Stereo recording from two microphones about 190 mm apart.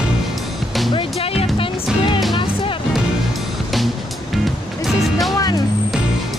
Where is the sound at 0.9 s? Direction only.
30° left (ahead or behind).